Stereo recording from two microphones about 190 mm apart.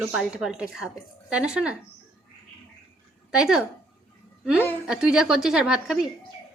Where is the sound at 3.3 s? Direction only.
5° right (ahead or behind).